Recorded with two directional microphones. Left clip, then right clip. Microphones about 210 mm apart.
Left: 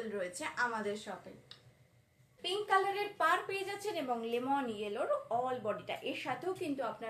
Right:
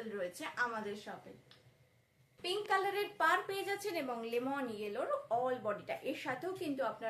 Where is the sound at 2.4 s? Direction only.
30° right (ahead or behind).